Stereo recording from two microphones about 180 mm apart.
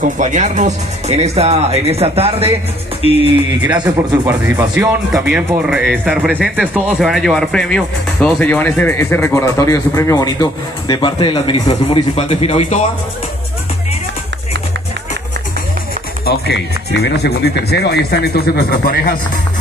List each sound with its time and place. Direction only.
0.0 s speech: 45° right (ahead or behind)
3.7 s speech: 20° right (ahead or behind)
4.3 s speech: 5° right (ahead or behind); by 12.8 s 40° left (ahead or behind)
16.3 s speech: 65° left (ahead or behind)